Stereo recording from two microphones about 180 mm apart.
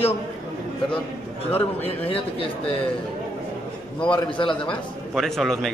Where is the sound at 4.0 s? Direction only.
5° left (ahead or behind).